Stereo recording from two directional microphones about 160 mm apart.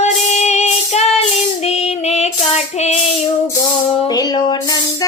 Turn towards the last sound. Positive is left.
turn(degrees=25)  # may be behind; listen again after turning